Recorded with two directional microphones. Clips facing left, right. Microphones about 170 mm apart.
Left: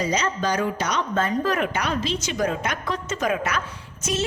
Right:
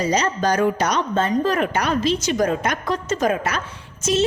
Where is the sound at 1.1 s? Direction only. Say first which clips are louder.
Right 1 dB; 25° right (ahead or behind).